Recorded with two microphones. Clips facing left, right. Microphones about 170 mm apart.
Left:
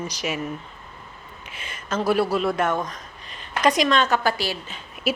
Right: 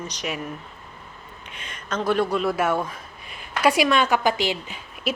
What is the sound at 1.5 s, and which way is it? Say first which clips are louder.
Speech: left 2 dB; 5° left (ahead or behind).